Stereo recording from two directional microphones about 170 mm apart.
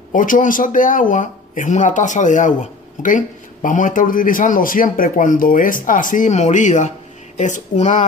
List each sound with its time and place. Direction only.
0.1 s a man's voice: 50° left (ahead or behind)